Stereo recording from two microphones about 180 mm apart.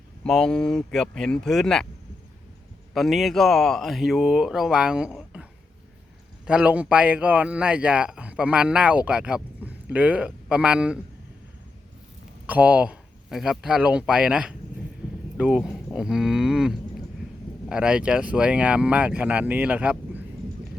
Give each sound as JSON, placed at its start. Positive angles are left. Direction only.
{"t": 0.3, "sound": "speech", "side_deg": 5}
{"t": 2.9, "sound": "speech", "side_deg": 0}
{"t": 12.5, "sound": "speech", "side_deg": -10}